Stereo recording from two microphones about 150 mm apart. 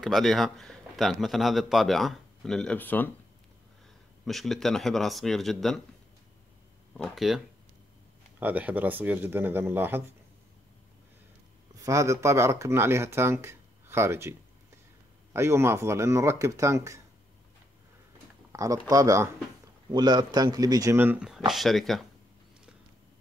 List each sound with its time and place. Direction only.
0.0 s a man's voice: centre (ahead or behind)
4.3 s a man's voice: centre (ahead or behind)
6.9 s a man's voice: centre (ahead or behind)
11.7 s speech: 20° right (ahead or behind)
15.3 s speech: 15° right (ahead or behind)
18.5 s speech: 20° right (ahead or behind)
21.5 s a man's voice: centre (ahead or behind)